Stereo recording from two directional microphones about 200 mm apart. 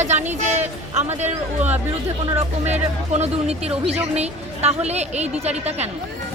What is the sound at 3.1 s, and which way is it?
A woman's voice, 30° right (ahead or behind).